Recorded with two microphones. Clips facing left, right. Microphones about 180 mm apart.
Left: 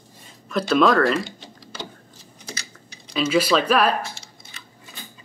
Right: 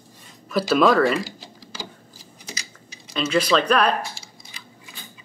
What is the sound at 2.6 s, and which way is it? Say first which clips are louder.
Typing: even; 5° right (ahead or behind).